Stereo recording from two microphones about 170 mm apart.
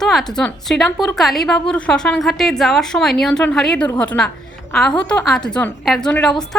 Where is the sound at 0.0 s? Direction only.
Centre (ahead or behind).